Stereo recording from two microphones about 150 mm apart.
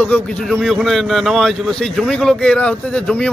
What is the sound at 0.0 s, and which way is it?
Speech, 5° left (ahead or behind).